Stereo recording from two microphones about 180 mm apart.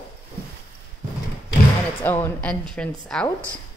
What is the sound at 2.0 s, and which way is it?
A woman's voice, 10° left (ahead or behind).